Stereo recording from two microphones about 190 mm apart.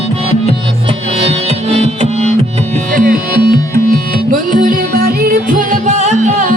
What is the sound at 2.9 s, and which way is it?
Music, 45° right (ahead or behind).